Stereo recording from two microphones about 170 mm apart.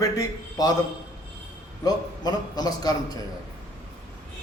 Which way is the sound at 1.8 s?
25° left (ahead or behind).